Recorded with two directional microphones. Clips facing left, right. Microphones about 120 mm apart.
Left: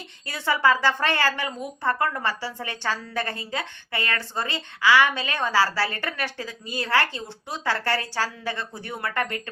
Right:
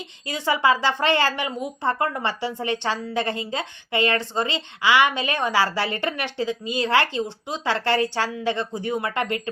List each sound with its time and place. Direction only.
0.3 s speech: 15° right (ahead or behind)